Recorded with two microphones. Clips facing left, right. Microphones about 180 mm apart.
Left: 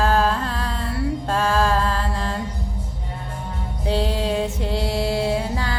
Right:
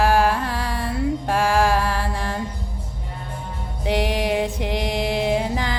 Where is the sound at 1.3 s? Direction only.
15° right (ahead or behind).